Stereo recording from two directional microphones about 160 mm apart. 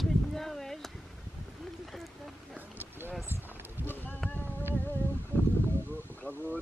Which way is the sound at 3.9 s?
10° left (ahead or behind).